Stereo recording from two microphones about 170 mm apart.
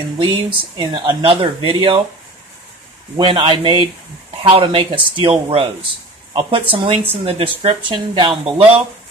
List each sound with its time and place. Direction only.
0.2 s speech: 30° right (ahead or behind)
3.2 s speech: 30° right (ahead or behind)